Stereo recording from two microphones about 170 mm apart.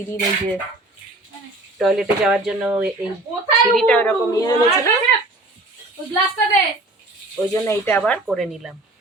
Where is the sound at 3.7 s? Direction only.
5° left (ahead or behind).